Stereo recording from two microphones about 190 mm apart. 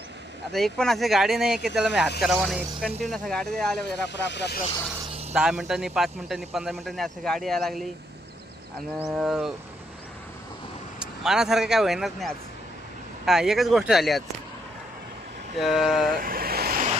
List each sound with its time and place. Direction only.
0.5 s speech: centre (ahead or behind)
4.1 s speech: 65° left (ahead or behind)
5.3 s speech: 5° right (ahead or behind)
9.0 s speech: 5° right (ahead or behind)
11.0 s speech: centre (ahead or behind)
15.5 s speech: centre (ahead or behind)
16.1 s waves: 50° right (ahead or behind)